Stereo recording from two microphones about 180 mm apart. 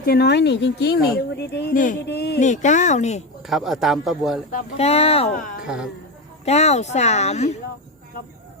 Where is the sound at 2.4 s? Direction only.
45° left (ahead or behind).